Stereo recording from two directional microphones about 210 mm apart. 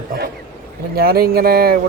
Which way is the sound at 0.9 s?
45° right (ahead or behind).